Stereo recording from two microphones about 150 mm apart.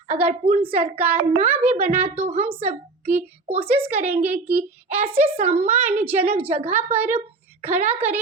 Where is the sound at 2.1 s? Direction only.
45° right (ahead or behind).